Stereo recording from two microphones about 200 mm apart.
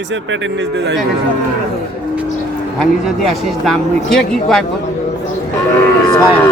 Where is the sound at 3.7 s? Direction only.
Centre (ahead or behind).